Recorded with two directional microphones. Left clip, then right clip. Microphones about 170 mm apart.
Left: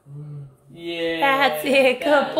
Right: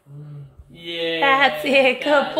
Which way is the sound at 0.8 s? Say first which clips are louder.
Right 1 dB; 45° right (ahead or behind).